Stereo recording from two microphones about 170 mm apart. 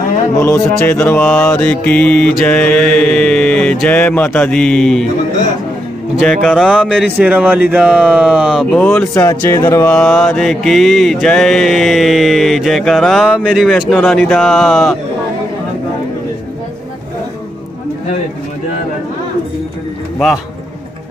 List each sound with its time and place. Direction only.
0.4 s mantra: 15° left (ahead or behind)
6.1 s mantra: centre (ahead or behind)
8.7 s mantra: 10° left (ahead or behind)
9.8 s mantra: 5° left (ahead or behind)